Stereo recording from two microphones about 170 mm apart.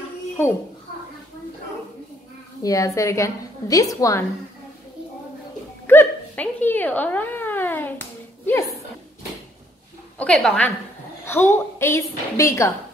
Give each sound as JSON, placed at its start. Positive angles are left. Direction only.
{"t": 2.6, "sound": "a woman's voice", "side_deg": 20}
{"t": 5.9, "sound": "a sound", "side_deg": 10}
{"t": 10.1, "sound": "a woman's voice", "side_deg": 5}